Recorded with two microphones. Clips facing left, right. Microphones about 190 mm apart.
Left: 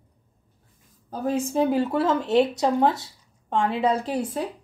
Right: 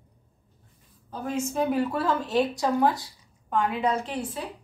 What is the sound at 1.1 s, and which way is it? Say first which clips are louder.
A woman's voice: left 4 dB; 35° left (ahead or behind).